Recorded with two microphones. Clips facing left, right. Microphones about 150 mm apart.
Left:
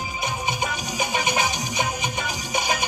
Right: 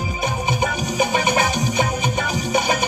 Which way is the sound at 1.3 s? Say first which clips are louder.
Right 5 dB; 55° right (ahead or behind).